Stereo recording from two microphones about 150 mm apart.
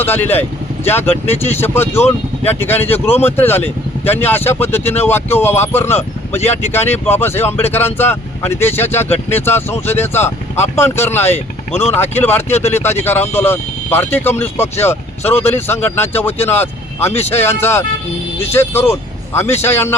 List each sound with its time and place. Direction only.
0.0 s speech: 15° left (ahead or behind)